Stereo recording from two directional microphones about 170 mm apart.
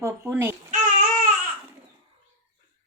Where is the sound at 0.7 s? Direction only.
50° right (ahead or behind).